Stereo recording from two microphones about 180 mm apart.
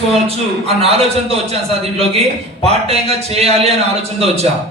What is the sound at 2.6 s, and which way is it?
Speech, 35° right (ahead or behind).